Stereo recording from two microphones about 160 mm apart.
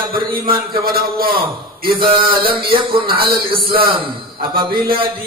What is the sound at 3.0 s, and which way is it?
Speech, 70° right (ahead or behind).